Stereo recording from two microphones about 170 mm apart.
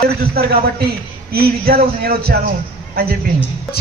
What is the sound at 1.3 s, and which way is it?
A woman's voice, 60° right (ahead or behind).